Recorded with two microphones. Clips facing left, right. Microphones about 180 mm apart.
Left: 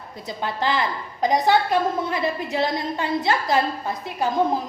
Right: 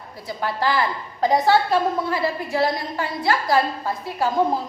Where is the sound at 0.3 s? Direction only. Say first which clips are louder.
Right 1 dB; 20° left (ahead or behind).